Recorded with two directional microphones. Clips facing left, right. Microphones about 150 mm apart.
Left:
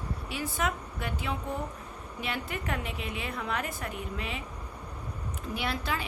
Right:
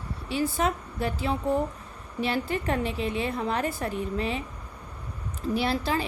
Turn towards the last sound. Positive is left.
turn(degrees=-35)  # may be behind; listen again after turning